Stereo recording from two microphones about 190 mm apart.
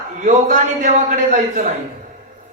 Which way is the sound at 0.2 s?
40° right (ahead or behind).